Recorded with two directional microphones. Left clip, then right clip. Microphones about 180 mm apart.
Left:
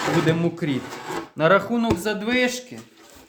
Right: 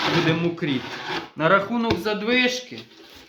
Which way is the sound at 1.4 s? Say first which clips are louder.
Left 1 dB; 65° left (ahead or behind).